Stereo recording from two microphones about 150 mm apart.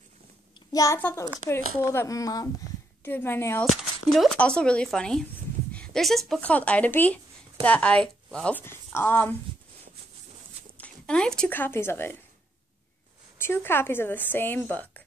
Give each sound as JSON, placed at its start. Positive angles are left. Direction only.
{"t": 0.7, "sound": "a woman's voice", "side_deg": 20}
{"t": 3.6, "sound": "a woman's voice", "side_deg": 0}
{"t": 10.8, "sound": "speech", "side_deg": 5}
{"t": 13.4, "sound": "a woman's voice", "side_deg": 15}